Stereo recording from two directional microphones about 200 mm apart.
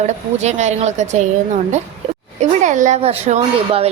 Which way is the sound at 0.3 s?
35° right (ahead or behind).